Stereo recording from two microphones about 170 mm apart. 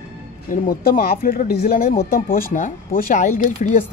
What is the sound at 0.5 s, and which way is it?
Speech, 60° left (ahead or behind).